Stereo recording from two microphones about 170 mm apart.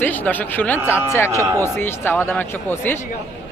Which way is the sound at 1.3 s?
20° right (ahead or behind).